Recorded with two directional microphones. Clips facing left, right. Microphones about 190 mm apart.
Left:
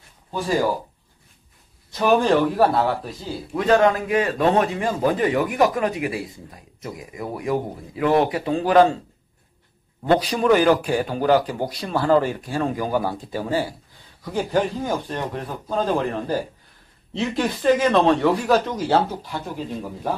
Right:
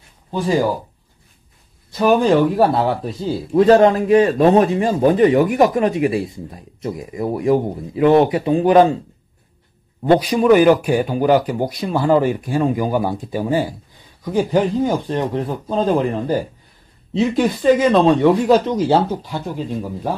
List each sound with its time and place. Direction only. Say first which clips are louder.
0.3 s a man's voice: right 4 dB; 20° right (ahead or behind)
2.0 s speech: right 4 dB; 10° right (ahead or behind)
2.6 s a man's voice: right 3 dB; 25° right (ahead or behind)
10.1 s speech: right 5 dB; 15° right (ahead or behind)